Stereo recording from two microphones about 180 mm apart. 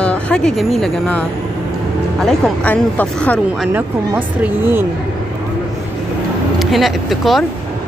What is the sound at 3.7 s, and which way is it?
Speech, 10° right (ahead or behind).